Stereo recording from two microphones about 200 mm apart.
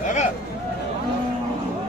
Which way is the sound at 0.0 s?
40° left (ahead or behind).